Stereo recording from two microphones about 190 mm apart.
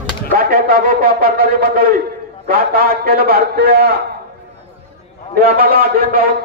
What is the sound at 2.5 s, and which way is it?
A man's voice, 50° right (ahead or behind).